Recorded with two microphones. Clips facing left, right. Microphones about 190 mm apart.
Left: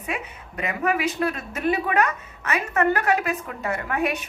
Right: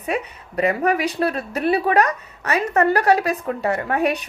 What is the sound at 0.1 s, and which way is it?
Speech, 35° right (ahead or behind).